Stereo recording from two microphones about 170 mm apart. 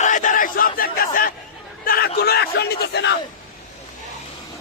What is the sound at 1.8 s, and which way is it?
Speech, 60° left (ahead or behind).